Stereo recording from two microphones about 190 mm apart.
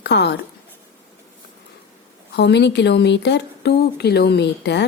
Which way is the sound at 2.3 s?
65° left (ahead or behind).